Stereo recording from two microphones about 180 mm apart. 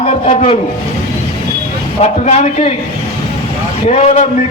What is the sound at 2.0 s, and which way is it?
Speech, 35° left (ahead or behind).